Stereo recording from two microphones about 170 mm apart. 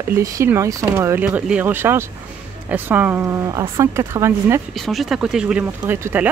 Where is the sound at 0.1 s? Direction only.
15° right (ahead or behind).